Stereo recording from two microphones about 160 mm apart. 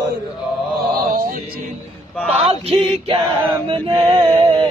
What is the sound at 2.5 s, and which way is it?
Male singing, 40° right (ahead or behind).